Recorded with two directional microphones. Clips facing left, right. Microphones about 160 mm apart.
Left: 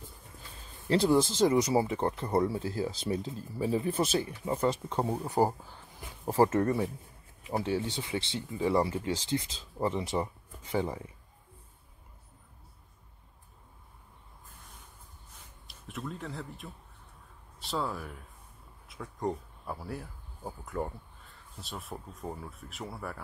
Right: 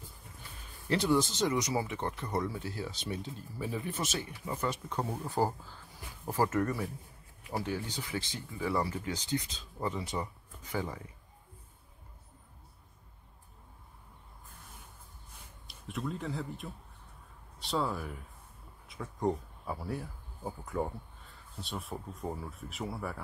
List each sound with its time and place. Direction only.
0.8 s speech: 30° left (ahead or behind)
15.6 s speech: centre (ahead or behind)